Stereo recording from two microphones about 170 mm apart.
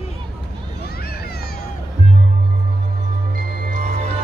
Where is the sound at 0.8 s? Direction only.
65° left (ahead or behind).